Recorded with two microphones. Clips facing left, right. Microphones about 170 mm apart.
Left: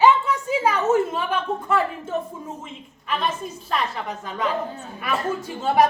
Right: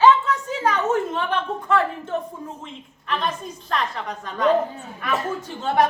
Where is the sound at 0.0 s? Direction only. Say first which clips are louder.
Right 1 dB; 10° left (ahead or behind).